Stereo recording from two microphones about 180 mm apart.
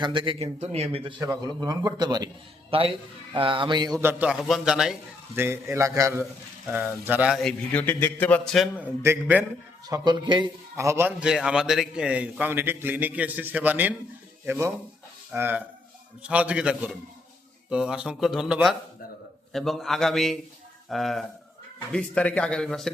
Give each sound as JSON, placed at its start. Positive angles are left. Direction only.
{"t": 0.0, "sound": "a man's voice", "side_deg": -25}
{"t": 1.2, "sound": "a man's voice", "side_deg": -20}
{"t": 4.1, "sound": "a man's voice", "side_deg": -5}
{"t": 5.4, "sound": "a man's voice", "side_deg": -15}
{"t": 9.0, "sound": "a man's voice", "side_deg": -10}
{"t": 9.8, "sound": "a man's voice", "side_deg": -25}